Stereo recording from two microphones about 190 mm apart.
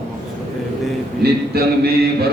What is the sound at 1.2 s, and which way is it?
Speech, 60° right (ahead or behind).